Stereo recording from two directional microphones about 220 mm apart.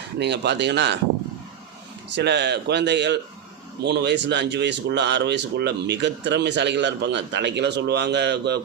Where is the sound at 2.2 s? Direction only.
50° right (ahead or behind).